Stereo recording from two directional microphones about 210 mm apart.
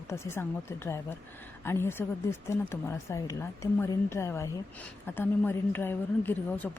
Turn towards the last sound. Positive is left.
turn(degrees=10)  # may be behind; listen again after turning